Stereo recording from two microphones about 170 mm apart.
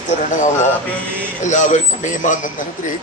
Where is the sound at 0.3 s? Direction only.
45° left (ahead or behind).